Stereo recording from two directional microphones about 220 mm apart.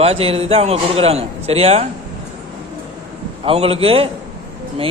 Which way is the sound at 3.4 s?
25° right (ahead or behind).